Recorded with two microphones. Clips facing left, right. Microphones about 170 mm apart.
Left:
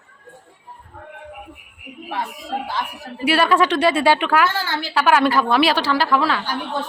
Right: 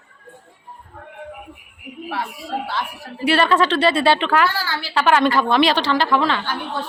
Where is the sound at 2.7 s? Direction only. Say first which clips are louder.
Even; 20° left (ahead or behind).